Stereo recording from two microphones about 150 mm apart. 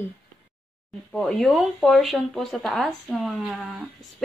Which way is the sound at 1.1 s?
5° left (ahead or behind).